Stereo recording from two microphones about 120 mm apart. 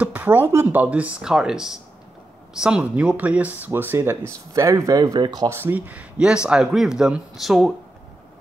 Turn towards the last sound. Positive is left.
turn(degrees=0)  # may be behind; listen again after turning